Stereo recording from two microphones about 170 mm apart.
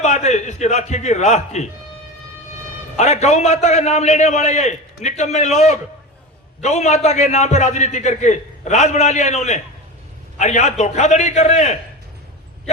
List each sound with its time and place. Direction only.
0.0 s a man's voice: 40° left (ahead or behind)
3.0 s a man's voice: 40° left (ahead or behind)